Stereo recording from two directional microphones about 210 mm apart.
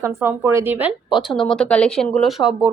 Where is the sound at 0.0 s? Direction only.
10° right (ahead or behind).